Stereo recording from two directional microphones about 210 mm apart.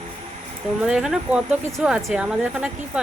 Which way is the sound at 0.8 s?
5° right (ahead or behind).